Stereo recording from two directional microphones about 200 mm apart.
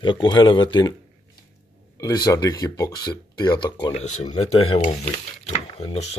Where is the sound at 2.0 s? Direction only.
15° left (ahead or behind).